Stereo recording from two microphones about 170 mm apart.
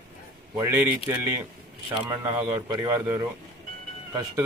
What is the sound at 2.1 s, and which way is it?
Speech, 15° right (ahead or behind).